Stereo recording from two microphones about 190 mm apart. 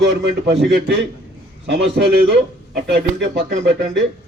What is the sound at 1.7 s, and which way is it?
A man's voice, 60° right (ahead or behind).